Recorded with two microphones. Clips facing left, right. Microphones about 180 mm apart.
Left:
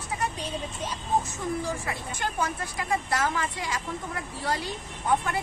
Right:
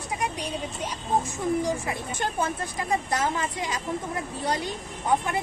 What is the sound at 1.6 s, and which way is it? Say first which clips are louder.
Speech: right 4 dB; 20° right (ahead or behind).